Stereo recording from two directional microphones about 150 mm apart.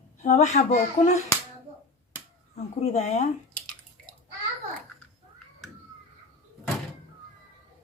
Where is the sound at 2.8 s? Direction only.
45° left (ahead or behind).